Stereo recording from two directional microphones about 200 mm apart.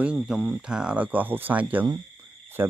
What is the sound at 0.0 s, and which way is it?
Speech, 5° right (ahead or behind).